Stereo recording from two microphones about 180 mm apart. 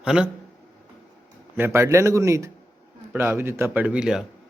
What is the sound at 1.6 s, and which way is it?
A man's voice, 15° right (ahead or behind).